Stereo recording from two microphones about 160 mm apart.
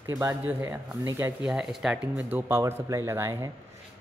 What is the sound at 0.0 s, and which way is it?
Speech, 20° right (ahead or behind).